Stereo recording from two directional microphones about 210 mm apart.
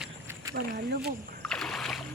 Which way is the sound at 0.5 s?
45° right (ahead or behind).